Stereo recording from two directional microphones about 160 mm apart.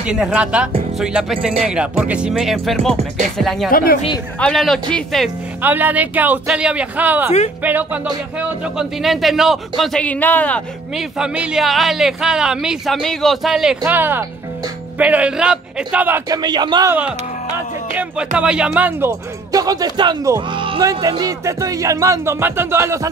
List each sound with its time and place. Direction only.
0.0 s a man's voice: 5° right (ahead or behind)
3.7 s speech: 70° left (ahead or behind)
4.4 s a man's voice: 5° left (ahead or behind)
5.6 s a man's voice: 10° right (ahead or behind); by 10.6 s 10° left (ahead or behind)
11.0 s a man's voice: 5° right (ahead or behind)
16.3 s speech: 25° right (ahead or behind)
17.9 s speech: 5° right (ahead or behind)